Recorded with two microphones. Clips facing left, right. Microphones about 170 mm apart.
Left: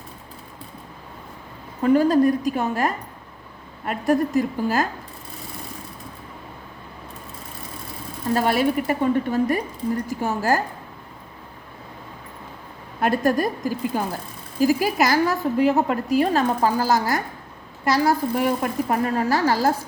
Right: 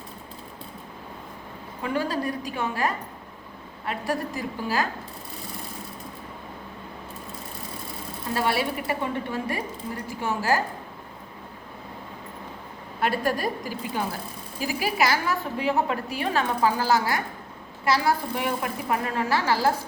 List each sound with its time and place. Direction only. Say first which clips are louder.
1.8 s a woman's voice: left 11 dB; 45° left (ahead or behind)
8.3 s a woman's voice: left 6 dB; 45° left (ahead or behind)
13.0 s a woman's voice: left 5 dB; 45° left (ahead or behind)